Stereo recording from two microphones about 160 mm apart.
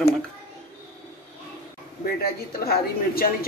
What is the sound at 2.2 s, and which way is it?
A woman's voice, 70° left (ahead or behind).